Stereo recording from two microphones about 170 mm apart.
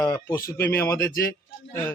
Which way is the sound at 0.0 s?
15° left (ahead or behind).